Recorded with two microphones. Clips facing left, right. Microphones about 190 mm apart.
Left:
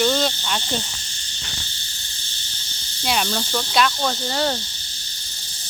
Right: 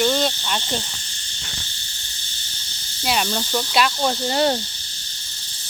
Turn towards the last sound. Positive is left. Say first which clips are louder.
# right 3 dB
turn(degrees=-20)  # may be behind; listen again after turning